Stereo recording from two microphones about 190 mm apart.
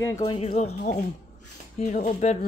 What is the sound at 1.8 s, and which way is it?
Speech, 40° left (ahead or behind).